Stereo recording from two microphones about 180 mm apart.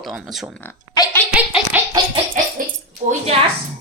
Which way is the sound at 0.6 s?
15° left (ahead or behind).